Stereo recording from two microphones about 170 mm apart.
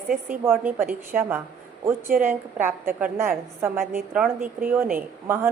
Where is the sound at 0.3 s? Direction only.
10° right (ahead or behind).